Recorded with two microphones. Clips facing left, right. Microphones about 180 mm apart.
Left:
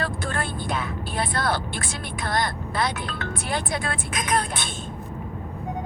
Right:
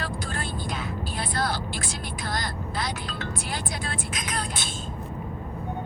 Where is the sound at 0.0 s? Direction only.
55° left (ahead or behind).